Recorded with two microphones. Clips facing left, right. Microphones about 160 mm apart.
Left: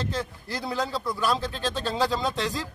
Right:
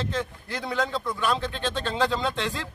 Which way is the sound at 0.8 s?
10° left (ahead or behind).